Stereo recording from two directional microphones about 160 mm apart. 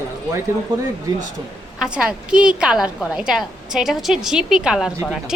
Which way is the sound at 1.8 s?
5° right (ahead or behind).